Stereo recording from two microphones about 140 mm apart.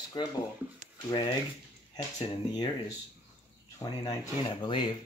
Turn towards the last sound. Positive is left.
turn(degrees=35)  # may be behind; listen again after turning